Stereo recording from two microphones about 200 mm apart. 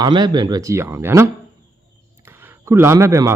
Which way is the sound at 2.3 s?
10° right (ahead or behind).